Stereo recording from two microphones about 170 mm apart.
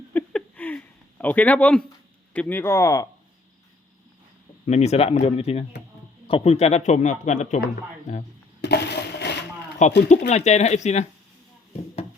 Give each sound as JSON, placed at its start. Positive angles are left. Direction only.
{"t": 0.1, "sound": "a sound", "side_deg": 10}
{"t": 2.3, "sound": "speech", "side_deg": 10}
{"t": 4.6, "sound": "speech", "side_deg": 40}
{"t": 8.6, "sound": "crushing", "side_deg": 80}
{"t": 10.1, "sound": "speech", "side_deg": 40}